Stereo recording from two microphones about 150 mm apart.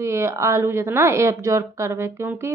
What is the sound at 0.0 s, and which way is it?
A woman's voice, 20° right (ahead or behind).